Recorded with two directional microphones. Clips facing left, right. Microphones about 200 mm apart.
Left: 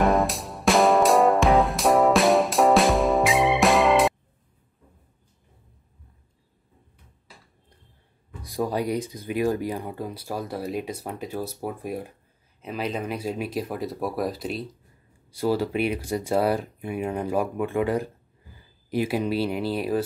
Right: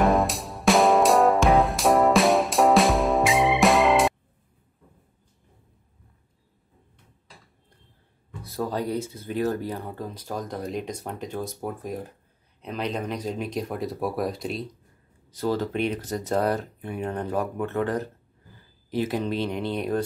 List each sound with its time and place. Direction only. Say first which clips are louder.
0.0 s music: even; centre (ahead or behind)
8.4 s speech: left 2 dB; 15° left (ahead or behind)